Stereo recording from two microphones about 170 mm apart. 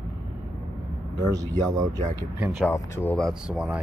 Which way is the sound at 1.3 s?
20° right (ahead or behind).